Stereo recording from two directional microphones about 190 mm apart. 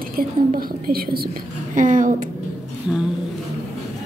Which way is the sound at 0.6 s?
50° right (ahead or behind).